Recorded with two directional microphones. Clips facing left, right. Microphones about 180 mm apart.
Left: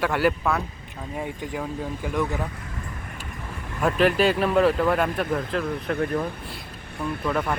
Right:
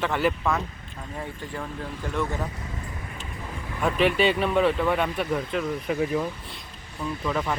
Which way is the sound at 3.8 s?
Centre (ahead or behind).